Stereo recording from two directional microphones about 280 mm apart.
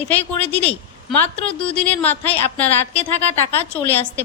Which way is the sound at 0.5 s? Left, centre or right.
Centre.